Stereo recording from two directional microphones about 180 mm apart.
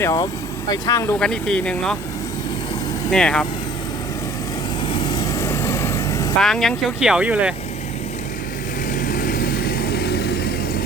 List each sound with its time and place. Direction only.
0.0 s speech: 20° left (ahead or behind)
1.2 s speech: 5° left (ahead or behind)
3.1 s speech: 5° left (ahead or behind)
4.9 s vehicle: 25° left (ahead or behind)
6.4 s speech: centre (ahead or behind)
8.9 s vehicle: 45° left (ahead or behind); by 10.5 s 65° left (ahead or behind)